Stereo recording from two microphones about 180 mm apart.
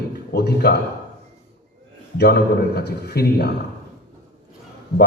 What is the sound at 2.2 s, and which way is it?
A man's voice, 60° left (ahead or behind).